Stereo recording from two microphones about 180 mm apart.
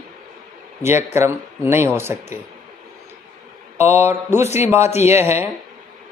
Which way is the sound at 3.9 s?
15° right (ahead or behind).